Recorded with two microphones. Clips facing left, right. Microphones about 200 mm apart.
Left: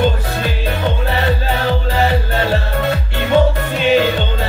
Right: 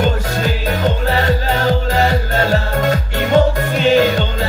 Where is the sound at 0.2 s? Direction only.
40° right (ahead or behind).